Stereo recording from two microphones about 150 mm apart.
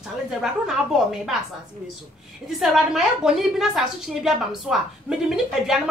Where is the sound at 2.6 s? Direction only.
Centre (ahead or behind).